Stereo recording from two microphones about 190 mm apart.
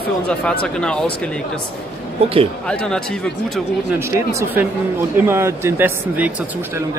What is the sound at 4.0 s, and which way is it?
Speech, 15° right (ahead or behind).